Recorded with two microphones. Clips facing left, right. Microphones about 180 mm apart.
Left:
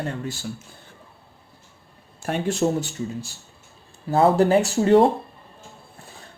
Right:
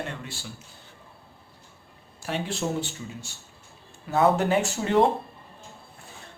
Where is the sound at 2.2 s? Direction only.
50° left (ahead or behind).